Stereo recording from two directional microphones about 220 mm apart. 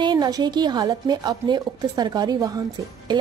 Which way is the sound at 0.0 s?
20° right (ahead or behind).